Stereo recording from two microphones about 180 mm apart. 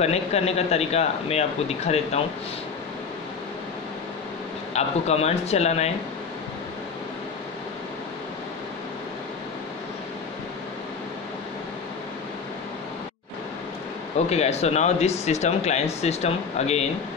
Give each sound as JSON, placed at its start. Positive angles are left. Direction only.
{"t": 0.0, "sound": "speech", "side_deg": 35}
{"t": 4.7, "sound": "speech", "side_deg": 35}
{"t": 14.1, "sound": "speech", "side_deg": 35}